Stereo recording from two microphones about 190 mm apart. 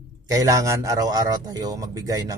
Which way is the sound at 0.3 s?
15° right (ahead or behind).